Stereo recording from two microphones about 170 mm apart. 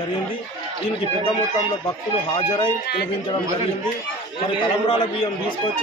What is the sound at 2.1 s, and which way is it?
Speech, 30° left (ahead or behind).